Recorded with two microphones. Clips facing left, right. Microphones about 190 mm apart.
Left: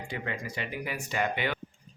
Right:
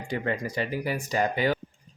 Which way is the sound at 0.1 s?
40° right (ahead or behind).